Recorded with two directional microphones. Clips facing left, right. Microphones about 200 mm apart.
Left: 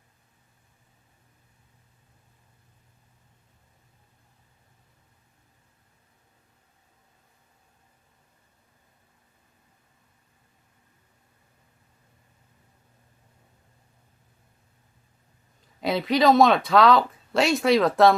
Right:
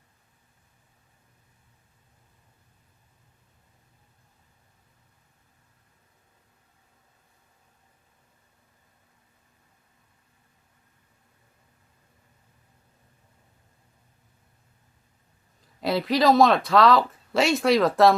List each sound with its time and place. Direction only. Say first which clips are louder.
15.6 s speech: even; centre (ahead or behind)